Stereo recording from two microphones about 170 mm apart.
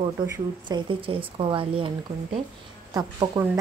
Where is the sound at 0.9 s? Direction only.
30° right (ahead or behind).